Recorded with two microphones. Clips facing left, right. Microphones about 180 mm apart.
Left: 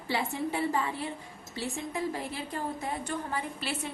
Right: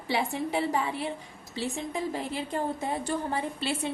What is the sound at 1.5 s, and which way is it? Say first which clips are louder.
A woman's voice: right 2 dB; 20° right (ahead or behind).